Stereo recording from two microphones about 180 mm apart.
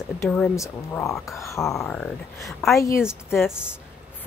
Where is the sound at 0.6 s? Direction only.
15° left (ahead or behind).